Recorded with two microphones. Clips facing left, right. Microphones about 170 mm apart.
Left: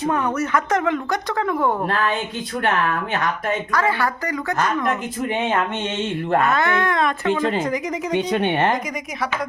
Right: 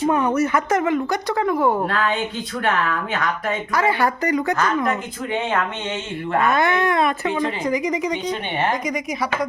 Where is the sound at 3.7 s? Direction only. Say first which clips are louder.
Right 3 dB; 10° right (ahead or behind).